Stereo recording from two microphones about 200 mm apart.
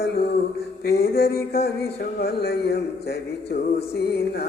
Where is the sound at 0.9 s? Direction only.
50° left (ahead or behind).